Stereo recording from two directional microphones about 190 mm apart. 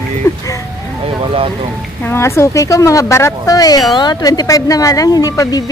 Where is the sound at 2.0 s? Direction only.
15° left (ahead or behind).